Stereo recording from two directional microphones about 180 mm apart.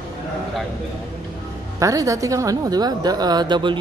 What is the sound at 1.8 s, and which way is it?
A woman's voice, 20° right (ahead or behind).